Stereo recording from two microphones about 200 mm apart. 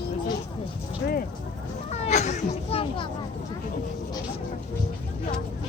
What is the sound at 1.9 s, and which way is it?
Children playing, 35° left (ahead or behind).